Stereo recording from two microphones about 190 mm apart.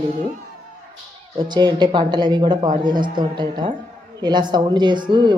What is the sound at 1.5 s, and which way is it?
A woman's voice, 20° right (ahead or behind).